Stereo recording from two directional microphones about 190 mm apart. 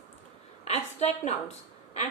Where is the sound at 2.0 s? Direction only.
35° left (ahead or behind).